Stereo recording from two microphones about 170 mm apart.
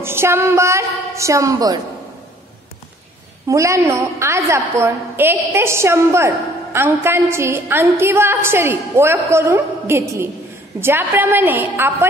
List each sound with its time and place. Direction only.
0.0 s a woman's voice: 15° right (ahead or behind)
3.4 s a woman's voice: 15° right (ahead or behind)